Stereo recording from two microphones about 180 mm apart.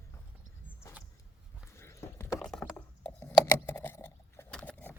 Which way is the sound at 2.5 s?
5° left (ahead or behind).